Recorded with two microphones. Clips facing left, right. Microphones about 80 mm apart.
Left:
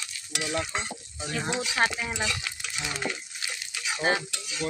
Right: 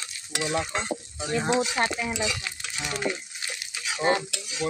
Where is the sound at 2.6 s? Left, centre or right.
Centre.